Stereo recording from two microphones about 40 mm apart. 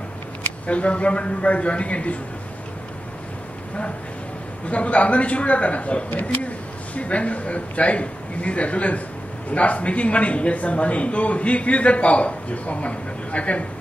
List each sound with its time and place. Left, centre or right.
0.7 s speech: left
4.6 s speech: left